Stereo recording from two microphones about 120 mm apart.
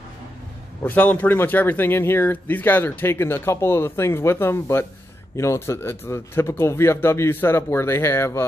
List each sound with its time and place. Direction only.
0.8 s speech: 15° left (ahead or behind)